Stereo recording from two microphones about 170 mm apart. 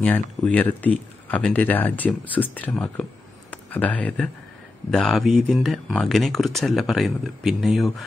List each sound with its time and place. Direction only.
0.0 s speech: 10° left (ahead or behind)